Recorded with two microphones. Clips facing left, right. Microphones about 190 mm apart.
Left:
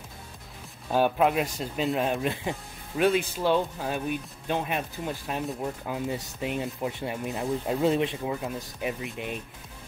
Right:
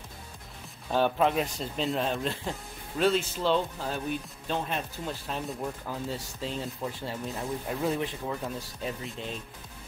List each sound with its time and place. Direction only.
0.9 s speech: 10° left (ahead or behind)